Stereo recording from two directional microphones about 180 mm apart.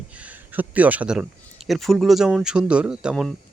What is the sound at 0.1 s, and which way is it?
Speech, 10° right (ahead or behind).